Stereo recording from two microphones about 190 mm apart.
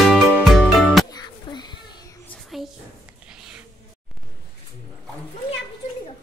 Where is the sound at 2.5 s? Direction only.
Centre (ahead or behind).